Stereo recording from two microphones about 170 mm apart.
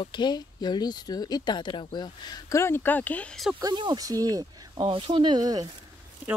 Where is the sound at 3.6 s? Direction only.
25° right (ahead or behind).